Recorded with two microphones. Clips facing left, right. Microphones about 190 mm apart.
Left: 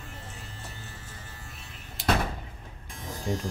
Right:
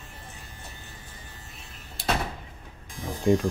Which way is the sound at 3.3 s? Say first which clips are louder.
Right 10 dB; 90° right.